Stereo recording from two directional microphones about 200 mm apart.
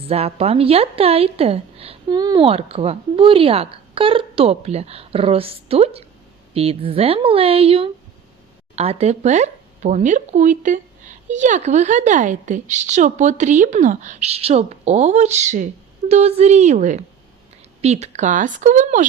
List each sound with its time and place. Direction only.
0.1 s a woman's voice: 30° right (ahead or behind)